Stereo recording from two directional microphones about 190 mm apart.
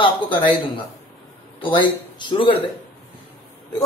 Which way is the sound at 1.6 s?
25° left (ahead or behind).